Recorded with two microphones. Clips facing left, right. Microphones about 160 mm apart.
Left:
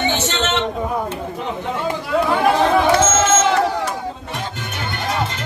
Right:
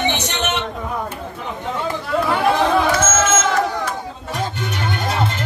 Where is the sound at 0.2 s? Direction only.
15° right (ahead or behind).